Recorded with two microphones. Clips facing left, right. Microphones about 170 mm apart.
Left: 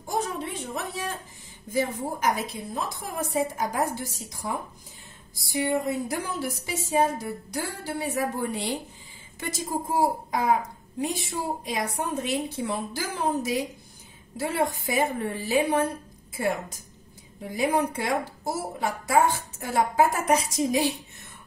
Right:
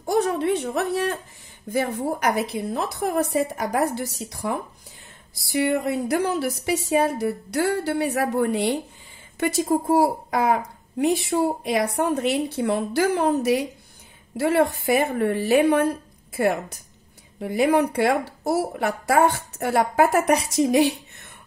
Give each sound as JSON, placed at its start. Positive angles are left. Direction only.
{"t": 0.0, "sound": "a woman's voice", "side_deg": -70}